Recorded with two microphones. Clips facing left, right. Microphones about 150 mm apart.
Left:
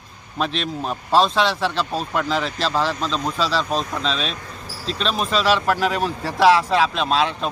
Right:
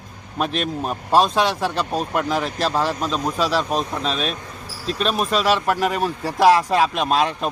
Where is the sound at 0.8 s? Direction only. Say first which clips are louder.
Even; 10° right (ahead or behind).